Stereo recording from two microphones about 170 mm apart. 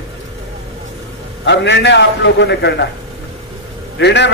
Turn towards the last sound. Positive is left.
turn(degrees=90)